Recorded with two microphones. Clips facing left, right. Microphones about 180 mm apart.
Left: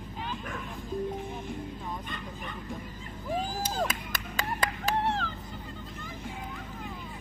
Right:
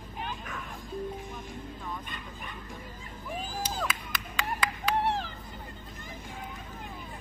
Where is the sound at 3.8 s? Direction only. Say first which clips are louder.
Left 3 dB; 45° left (ahead or behind).